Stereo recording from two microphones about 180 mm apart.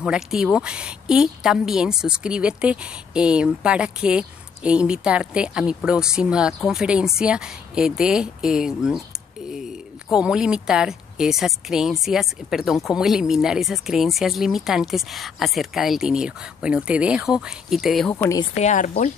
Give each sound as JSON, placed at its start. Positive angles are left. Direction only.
{"t": 0.0, "sound": "speech", "side_deg": -5}
{"t": 18.1, "sound": "speech", "side_deg": 15}
{"t": 18.6, "sound": "speech", "side_deg": 45}